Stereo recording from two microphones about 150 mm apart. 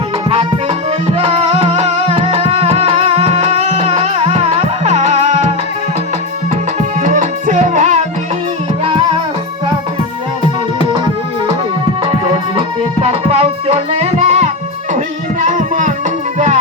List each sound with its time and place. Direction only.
0.3 s music: 40° right (ahead or behind)
6.7 s tabla: 55° right (ahead or behind)
8.8 s music: 35° right (ahead or behind)
12.5 s music: 40° right (ahead or behind); by 15.9 s 55° right (ahead or behind)